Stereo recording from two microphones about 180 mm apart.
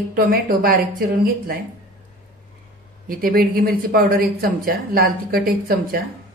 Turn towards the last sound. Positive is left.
turn(degrees=-55)  # may be behind; listen again after turning